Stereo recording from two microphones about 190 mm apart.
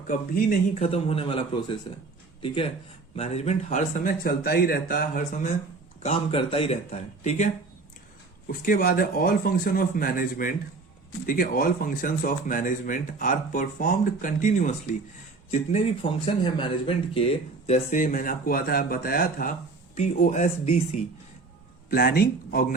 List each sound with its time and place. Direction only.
0.1 s speech: 50° left (ahead or behind)
6.0 s speech: 30° left (ahead or behind)
17.9 s speech: 45° left (ahead or behind)
21.8 s speech: 50° left (ahead or behind)